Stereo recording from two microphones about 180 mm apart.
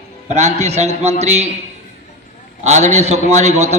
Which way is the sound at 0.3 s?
40° right (ahead or behind).